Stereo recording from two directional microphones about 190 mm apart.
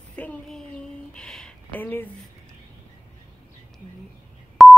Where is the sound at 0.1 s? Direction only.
5° left (ahead or behind).